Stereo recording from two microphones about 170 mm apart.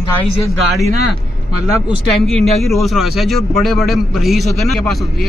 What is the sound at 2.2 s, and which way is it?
A man's voice, centre (ahead or behind).